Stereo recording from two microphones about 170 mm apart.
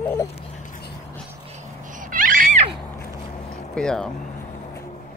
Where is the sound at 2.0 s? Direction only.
50° right (ahead or behind).